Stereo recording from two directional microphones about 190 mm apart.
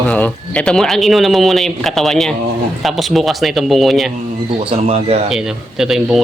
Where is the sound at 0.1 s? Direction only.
5° left (ahead or behind).